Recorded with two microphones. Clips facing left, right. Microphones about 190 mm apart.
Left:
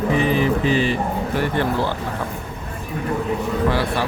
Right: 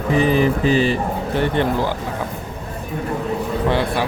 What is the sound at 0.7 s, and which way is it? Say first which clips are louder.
Speech: right 2 dB; 35° right (ahead or behind).